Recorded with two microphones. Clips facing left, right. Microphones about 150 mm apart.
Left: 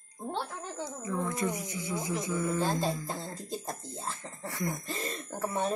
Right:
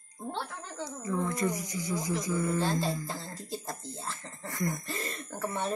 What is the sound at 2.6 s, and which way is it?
Speech, 15° left (ahead or behind).